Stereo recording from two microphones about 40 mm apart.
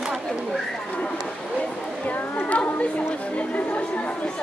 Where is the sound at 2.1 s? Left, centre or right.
Left.